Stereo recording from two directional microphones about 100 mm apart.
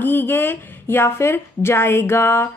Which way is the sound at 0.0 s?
20° left (ahead or behind).